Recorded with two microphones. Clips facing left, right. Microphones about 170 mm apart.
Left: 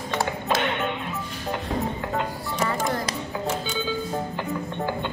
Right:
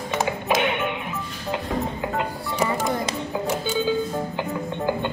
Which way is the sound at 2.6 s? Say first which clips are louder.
Right 2 dB; 15° right (ahead or behind).